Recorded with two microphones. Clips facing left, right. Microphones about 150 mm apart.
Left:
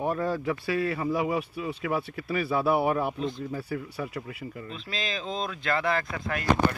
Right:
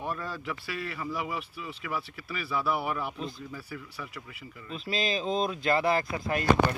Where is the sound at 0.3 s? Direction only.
50° left (ahead or behind).